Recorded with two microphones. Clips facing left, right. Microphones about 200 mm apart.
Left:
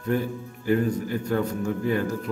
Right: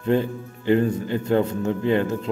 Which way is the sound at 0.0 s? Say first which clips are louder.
Right 4 dB; 25° right (ahead or behind).